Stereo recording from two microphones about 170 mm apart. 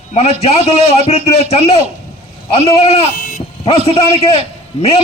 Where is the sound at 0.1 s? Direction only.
40° left (ahead or behind).